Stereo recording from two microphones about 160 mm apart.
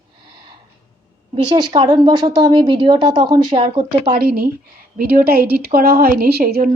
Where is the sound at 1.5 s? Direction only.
30° right (ahead or behind).